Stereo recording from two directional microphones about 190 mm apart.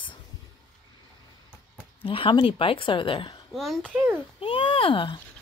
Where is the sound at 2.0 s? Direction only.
30° left (ahead or behind).